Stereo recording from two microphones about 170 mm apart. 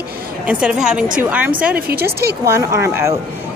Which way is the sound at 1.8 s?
65° right (ahead or behind).